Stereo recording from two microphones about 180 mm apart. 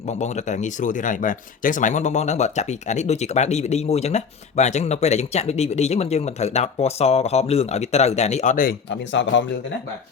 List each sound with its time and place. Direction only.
0.1 s speech: 40° left (ahead or behind)
9.2 s speech: 90° left